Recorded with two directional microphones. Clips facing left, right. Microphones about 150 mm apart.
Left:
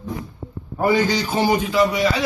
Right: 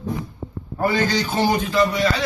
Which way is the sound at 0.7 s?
10° left (ahead or behind).